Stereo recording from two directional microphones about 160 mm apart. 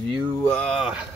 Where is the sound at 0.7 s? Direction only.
5° right (ahead or behind).